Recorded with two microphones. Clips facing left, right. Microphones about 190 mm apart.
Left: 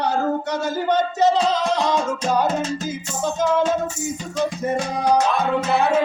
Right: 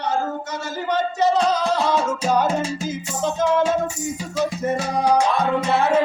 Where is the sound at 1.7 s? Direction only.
5° right (ahead or behind).